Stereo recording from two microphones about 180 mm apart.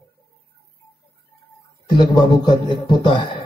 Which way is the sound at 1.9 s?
20° left (ahead or behind).